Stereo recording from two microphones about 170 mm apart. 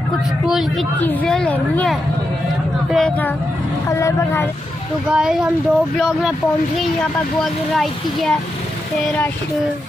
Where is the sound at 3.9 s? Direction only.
15° left (ahead or behind).